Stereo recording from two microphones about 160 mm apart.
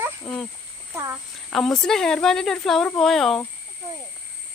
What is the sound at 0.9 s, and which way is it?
Speech, 20° right (ahead or behind).